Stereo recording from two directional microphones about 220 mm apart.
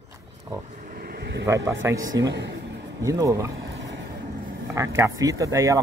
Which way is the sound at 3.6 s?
50° right (ahead or behind).